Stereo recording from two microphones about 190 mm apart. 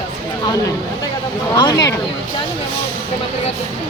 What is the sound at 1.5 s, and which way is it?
Speech, 20° left (ahead or behind).